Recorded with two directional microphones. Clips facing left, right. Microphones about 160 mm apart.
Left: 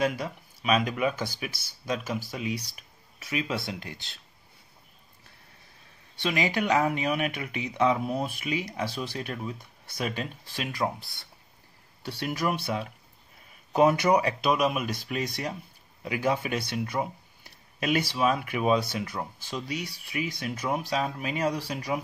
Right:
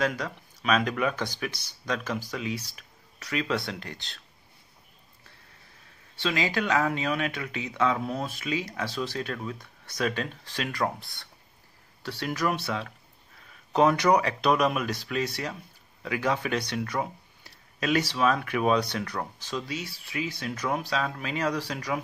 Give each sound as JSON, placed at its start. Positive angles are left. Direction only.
{"t": 0.0, "sound": "speech", "side_deg": 10}
{"t": 6.2, "sound": "speech", "side_deg": 15}